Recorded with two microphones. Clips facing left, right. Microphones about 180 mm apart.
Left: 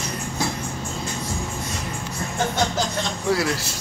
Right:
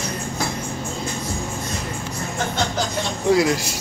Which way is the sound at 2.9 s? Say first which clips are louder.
Right 5 dB; 15° right (ahead or behind).